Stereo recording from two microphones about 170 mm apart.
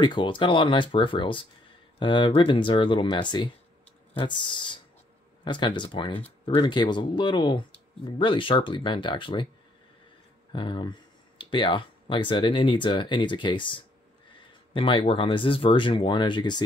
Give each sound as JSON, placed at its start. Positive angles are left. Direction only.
{"t": 0.0, "sound": "speech", "side_deg": 30}
{"t": 10.5, "sound": "speech", "side_deg": 25}